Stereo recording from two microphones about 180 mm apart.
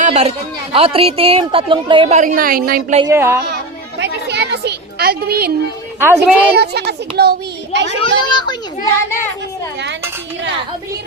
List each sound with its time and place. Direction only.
0.0 s speech: 40° right (ahead or behind); by 2.8 s 55° right (ahead or behind)
3.1 s a woman's voice: 15° right (ahead or behind)
4.0 s a sound: 70° right (ahead or behind)
6.0 s a woman's voice: 15° right (ahead or behind)
6.6 s a child's voice: 65° right (ahead or behind)
7.9 s a child's voice: 30° left (ahead or behind)